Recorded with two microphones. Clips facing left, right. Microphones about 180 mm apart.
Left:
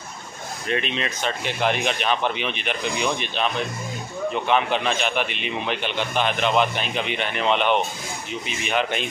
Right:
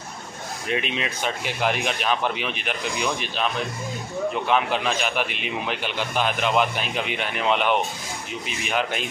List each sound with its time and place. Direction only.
0.7 s a man's voice: 5° right (ahead or behind)
4.5 s a man's voice: 5° right (ahead or behind)